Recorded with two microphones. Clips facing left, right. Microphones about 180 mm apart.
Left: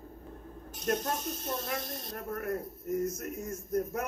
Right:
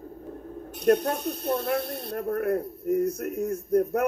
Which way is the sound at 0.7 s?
60° right (ahead or behind).